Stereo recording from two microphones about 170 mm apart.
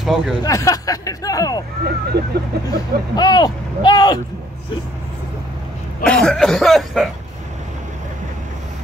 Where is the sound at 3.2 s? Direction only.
25° left (ahead or behind).